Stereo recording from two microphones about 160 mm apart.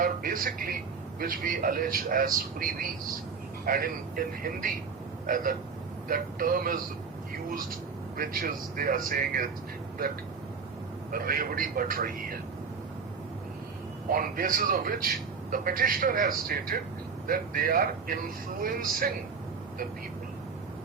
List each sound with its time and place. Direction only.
0.0 s a man's voice: 60° right (ahead or behind)
5.2 s hiccup: 60° right (ahead or behind)
6.1 s a man's voice: 60° right (ahead or behind)
8.1 s a man's voice: 65° right (ahead or behind)
11.1 s a man's voice: 65° right (ahead or behind)
14.1 s a man's voice: 60° right (ahead or behind)